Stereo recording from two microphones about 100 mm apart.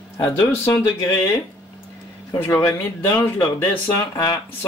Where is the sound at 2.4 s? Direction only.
25° left (ahead or behind).